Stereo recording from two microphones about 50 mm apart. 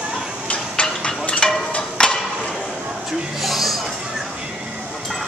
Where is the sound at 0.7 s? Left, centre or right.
Centre.